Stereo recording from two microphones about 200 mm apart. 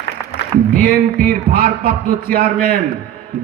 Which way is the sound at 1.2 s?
45° right (ahead or behind).